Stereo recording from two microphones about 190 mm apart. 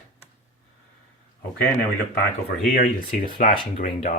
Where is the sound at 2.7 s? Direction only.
50° left (ahead or behind).